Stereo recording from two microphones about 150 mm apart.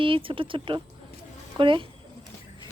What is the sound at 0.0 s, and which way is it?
A woman's voice, 35° right (ahead or behind).